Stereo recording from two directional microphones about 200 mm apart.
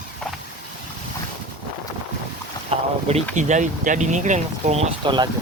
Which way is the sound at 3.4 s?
35° right (ahead or behind).